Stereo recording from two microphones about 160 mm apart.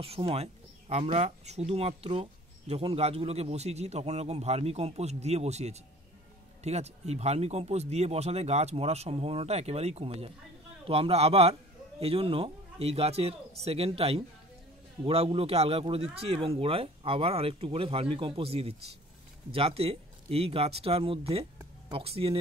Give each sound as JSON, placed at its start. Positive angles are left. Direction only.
{"t": 0.0, "sound": "speech", "side_deg": -35}